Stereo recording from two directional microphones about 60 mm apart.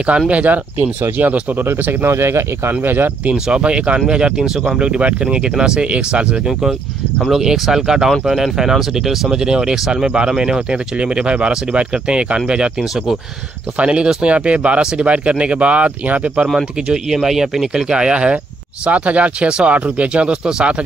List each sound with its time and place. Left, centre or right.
0.3 s speech: right
2.0 s speech: right
2.7 s speech: right
3.4 s speech: centre
7.2 s speech: centre
13.7 s speech: centre
16.8 s speech: centre